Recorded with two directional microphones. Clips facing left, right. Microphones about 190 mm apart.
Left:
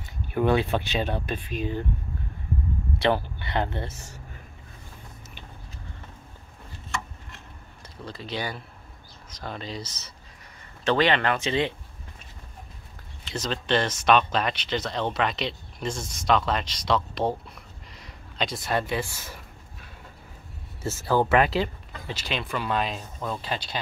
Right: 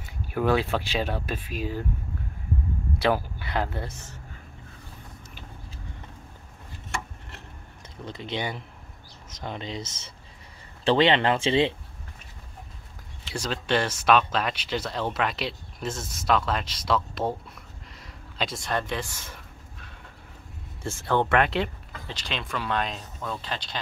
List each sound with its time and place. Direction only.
0.3 s speech: centre (ahead or behind)
3.0 s speech: 5° right (ahead or behind)
8.0 s speech: 20° right (ahead or behind)
13.3 s speech: 10° right (ahead or behind); by 19.4 s 5° left (ahead or behind)
20.8 s speech: 5° left (ahead or behind)